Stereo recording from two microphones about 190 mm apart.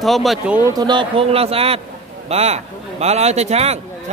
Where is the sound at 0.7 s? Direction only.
20° right (ahead or behind).